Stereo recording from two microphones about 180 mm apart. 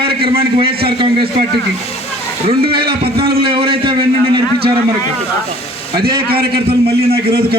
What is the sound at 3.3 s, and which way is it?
Speech, 60° right (ahead or behind).